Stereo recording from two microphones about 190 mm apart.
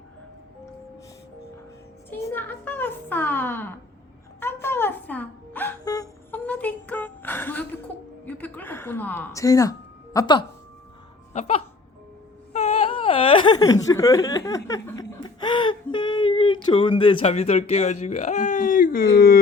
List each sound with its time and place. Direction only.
2.0 s a child's voice: 10° left (ahead or behind)
4.4 s a sound: 10° left (ahead or behind)
8.2 s a woman's voice: 10° left (ahead or behind)
11.3 s music: 30° left (ahead or behind)
12.5 s whimper: 35° left (ahead or behind)
13.9 s speech: 15° left (ahead or behind); by 19.4 s 50° left (ahead or behind)